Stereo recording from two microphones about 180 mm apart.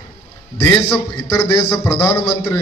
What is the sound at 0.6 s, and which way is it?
A man's voice, 15° left (ahead or behind).